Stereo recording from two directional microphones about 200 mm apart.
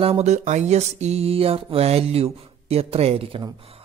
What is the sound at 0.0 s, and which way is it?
A man's voice, 30° right (ahead or behind).